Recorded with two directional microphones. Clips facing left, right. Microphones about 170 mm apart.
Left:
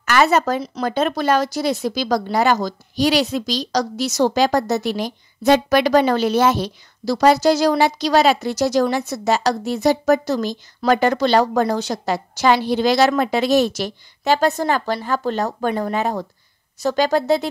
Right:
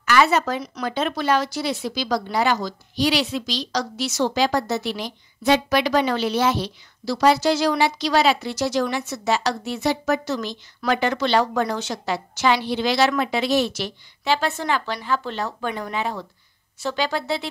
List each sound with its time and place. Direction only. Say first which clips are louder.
0.0 s a woman's voice: left 2 dB; 45° left (ahead or behind)